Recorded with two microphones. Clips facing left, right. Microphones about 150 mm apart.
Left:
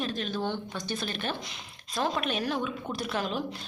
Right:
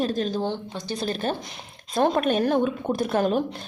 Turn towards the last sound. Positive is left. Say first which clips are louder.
# right 9 dB
turn(degrees=-50)  # may be behind; listen again after turning